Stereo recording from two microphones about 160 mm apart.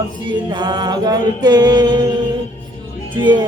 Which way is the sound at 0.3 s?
30° right (ahead or behind).